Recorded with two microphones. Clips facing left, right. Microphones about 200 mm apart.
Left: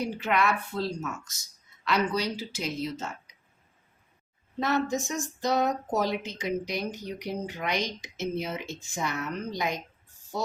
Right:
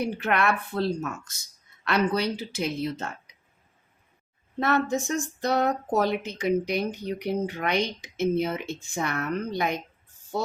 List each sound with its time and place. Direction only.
0.0 s speech: 60° right (ahead or behind)
4.6 s speech: 60° right (ahead or behind)